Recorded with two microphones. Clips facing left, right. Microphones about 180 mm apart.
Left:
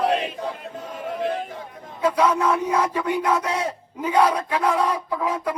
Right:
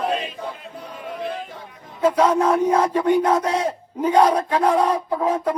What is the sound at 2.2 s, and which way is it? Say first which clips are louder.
Speech: right 3 dB; 30° right (ahead or behind).